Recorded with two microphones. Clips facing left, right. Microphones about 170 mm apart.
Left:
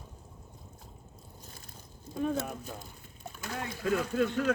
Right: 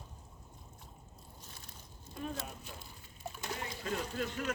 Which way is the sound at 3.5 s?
90° left.